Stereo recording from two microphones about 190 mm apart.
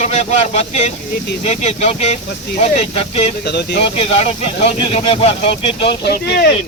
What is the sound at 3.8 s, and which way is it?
Speech, 30° left (ahead or behind).